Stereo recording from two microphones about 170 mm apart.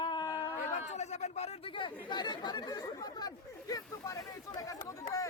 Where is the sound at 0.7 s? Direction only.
45° left (ahead or behind); by 5.3 s 20° left (ahead or behind).